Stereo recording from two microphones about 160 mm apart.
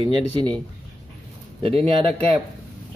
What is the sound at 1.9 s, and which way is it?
Speech, 35° right (ahead or behind).